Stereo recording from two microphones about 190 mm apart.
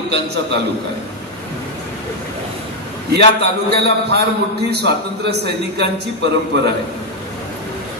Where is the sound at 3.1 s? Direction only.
60° right (ahead or behind).